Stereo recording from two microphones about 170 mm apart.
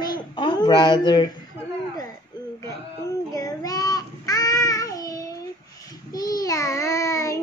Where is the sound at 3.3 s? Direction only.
20° left (ahead or behind).